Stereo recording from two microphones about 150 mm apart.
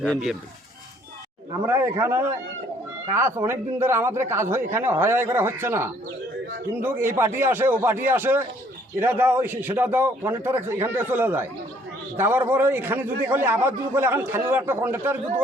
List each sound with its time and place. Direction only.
1.6 s a man's voice: 15° right (ahead or behind)